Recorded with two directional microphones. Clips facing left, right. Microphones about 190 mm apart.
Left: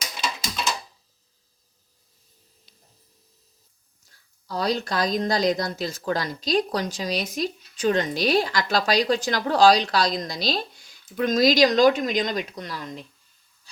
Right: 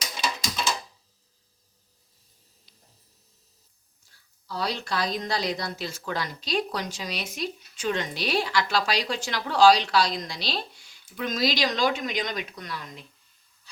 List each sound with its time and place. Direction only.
4.4 s a woman's voice: 40° left (ahead or behind)